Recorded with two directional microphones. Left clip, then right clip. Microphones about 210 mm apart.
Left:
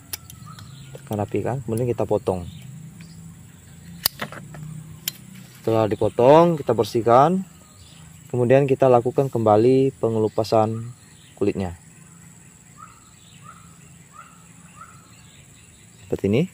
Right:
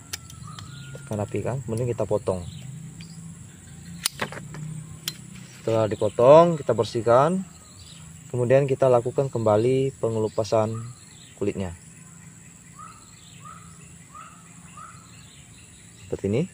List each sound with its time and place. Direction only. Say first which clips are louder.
1.0 s speech: left 4 dB; 50° left (ahead or behind)
4.2 s vehicle: right 1 dB; 10° right (ahead or behind)
5.6 s speech: left 3 dB; 50° left (ahead or behind)
16.1 s speech: left 4 dB; 45° left (ahead or behind)